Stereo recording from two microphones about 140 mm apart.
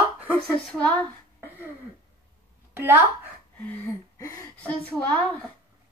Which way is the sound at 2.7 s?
15° right (ahead or behind).